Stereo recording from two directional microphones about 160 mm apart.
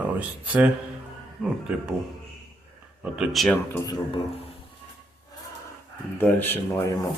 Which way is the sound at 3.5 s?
15° left (ahead or behind).